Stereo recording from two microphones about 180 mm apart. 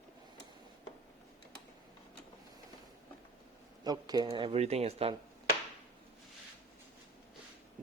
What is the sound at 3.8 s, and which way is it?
Speech, 20° right (ahead or behind).